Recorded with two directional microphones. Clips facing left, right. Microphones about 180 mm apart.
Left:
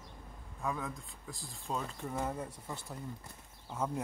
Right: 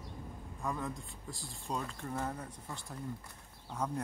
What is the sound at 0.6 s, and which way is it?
Speech, centre (ahead or behind).